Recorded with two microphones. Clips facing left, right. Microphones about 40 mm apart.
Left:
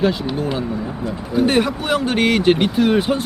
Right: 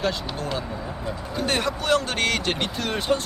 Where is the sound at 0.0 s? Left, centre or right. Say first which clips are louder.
Left 8 dB; centre.